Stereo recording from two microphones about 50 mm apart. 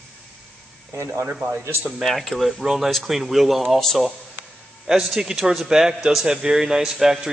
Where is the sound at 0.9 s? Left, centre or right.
Right.